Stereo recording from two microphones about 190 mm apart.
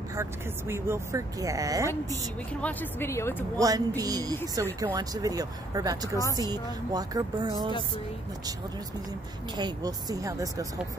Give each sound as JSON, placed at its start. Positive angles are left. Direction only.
{"t": 0.1, "sound": "speech", "side_deg": -15}
{"t": 2.6, "sound": "speech", "side_deg": 10}
{"t": 3.5, "sound": "speech", "side_deg": -20}
{"t": 9.6, "sound": "speech", "side_deg": -20}